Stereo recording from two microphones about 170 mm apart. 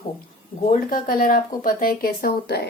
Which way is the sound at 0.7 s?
55° left (ahead or behind).